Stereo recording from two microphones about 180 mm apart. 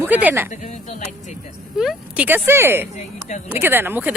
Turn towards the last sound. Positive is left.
turn(degrees=-10)  # may be behind; listen again after turning